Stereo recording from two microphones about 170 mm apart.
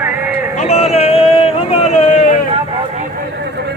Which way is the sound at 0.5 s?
40° left (ahead or behind).